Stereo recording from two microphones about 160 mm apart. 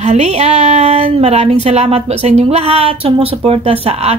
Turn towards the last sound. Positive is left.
turn(degrees=-40)  # may be behind; listen again after turning